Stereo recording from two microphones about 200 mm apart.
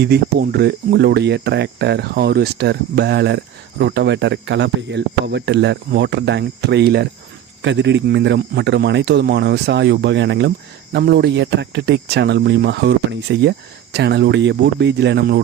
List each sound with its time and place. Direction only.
0.0 s speech: 55° right (ahead or behind)
7.6 s speech: 65° right (ahead or behind)